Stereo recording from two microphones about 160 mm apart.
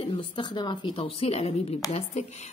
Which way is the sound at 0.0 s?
35° left (ahead or behind).